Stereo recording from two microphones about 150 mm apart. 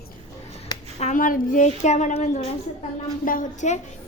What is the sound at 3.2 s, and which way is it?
Speech, 65° left (ahead or behind).